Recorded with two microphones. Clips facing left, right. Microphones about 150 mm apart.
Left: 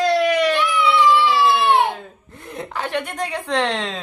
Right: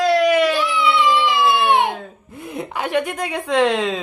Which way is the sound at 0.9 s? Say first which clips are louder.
Left 3 dB; 20° right (ahead or behind).